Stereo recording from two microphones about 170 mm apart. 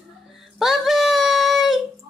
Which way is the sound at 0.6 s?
Centre (ahead or behind).